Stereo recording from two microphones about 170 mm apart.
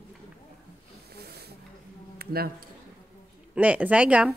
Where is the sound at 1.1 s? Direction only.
70° right (ahead or behind).